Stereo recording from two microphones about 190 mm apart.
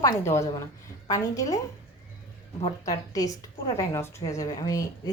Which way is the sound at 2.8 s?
20° left (ahead or behind).